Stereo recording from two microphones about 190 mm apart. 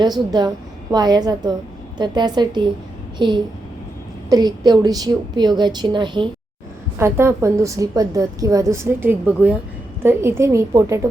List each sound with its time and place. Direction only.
0.0 s a woman's voice: 20° right (ahead or behind)
7.0 s a woman's voice: 15° right (ahead or behind)